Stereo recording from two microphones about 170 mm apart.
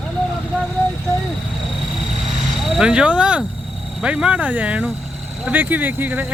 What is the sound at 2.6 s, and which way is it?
Speech, 5° right (ahead or behind).